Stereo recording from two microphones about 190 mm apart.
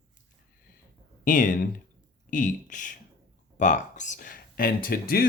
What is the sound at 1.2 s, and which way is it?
Speech, 45° left (ahead or behind).